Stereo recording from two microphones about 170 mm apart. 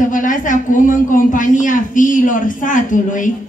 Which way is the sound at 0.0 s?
50° left (ahead or behind).